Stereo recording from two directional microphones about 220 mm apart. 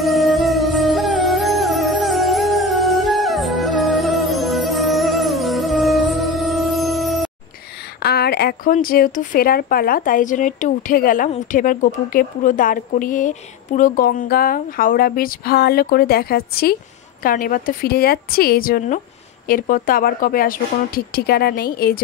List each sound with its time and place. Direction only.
0.0 s music: centre (ahead or behind)
8.0 s a sound: 45° left (ahead or behind)
8.7 s a woman's voice: 40° left (ahead or behind)